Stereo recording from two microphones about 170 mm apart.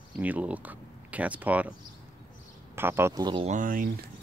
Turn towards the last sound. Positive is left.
turn(degrees=-50)  # may be behind; listen again after turning